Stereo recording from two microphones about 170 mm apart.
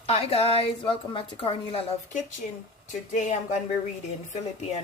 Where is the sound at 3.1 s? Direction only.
45° left (ahead or behind).